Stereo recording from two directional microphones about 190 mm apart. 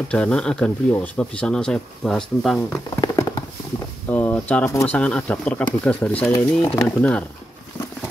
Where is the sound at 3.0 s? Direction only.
20° left (ahead or behind).